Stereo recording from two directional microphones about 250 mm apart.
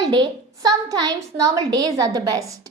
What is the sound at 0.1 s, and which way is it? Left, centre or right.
A woman's voice, centre.